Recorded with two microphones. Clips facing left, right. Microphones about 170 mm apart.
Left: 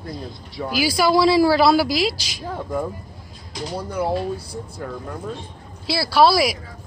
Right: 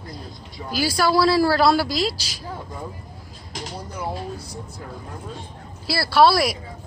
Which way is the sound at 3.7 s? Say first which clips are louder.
Left 8 dB; 60° left (ahead or behind).